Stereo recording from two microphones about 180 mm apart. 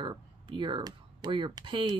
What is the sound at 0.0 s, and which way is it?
Speech, 25° right (ahead or behind).